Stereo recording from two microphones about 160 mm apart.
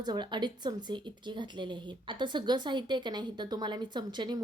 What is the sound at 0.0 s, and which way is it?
A woman's voice, 25° right (ahead or behind).